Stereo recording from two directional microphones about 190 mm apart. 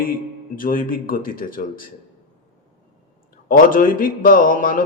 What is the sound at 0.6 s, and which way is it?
Speech, 45° left (ahead or behind).